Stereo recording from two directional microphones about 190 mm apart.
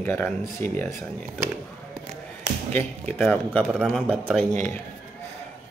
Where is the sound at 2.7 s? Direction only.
5° left (ahead or behind).